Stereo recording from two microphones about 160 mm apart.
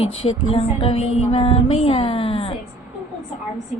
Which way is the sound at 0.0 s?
35° left (ahead or behind).